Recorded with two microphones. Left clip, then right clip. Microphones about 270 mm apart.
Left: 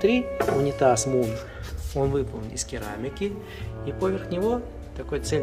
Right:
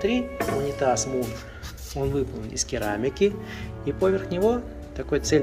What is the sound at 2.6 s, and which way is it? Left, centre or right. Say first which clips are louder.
Speech: right 7 dB; centre.